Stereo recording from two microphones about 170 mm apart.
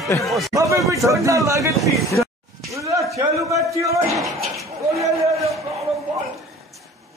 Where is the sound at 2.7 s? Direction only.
20° right (ahead or behind).